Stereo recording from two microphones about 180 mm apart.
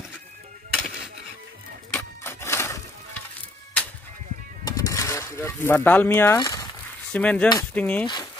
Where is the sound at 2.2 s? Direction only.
15° left (ahead or behind).